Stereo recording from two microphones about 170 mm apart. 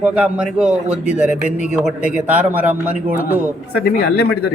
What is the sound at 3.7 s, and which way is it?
Speech, 65° left (ahead or behind).